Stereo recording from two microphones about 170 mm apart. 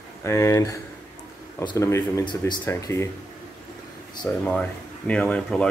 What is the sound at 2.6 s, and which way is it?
Speech, 15° left (ahead or behind).